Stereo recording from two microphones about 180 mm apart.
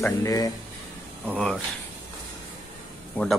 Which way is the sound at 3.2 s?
10° left (ahead or behind).